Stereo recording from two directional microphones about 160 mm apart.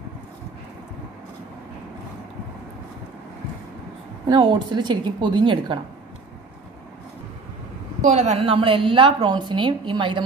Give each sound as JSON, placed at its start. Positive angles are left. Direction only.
{"t": 4.3, "sound": "a woman's voice", "side_deg": -30}
{"t": 8.0, "sound": "a woman's voice", "side_deg": -45}